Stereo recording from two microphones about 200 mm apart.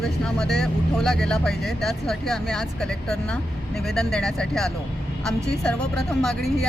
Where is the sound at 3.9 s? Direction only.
Centre (ahead or behind).